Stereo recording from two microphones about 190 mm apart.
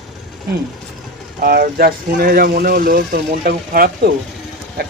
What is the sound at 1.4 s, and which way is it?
Speech, 50° right (ahead or behind).